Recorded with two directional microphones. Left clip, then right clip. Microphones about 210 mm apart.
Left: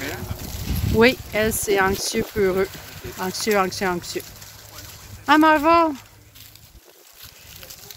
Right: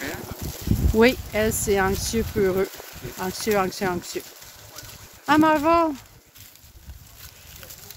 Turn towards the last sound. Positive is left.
turn(degrees=0)  # may be behind; listen again after turning